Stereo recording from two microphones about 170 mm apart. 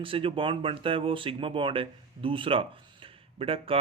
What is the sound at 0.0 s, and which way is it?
Speech, 30° right (ahead or behind).